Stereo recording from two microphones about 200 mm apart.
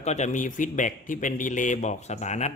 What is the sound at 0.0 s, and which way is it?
A man's voice, 35° left (ahead or behind).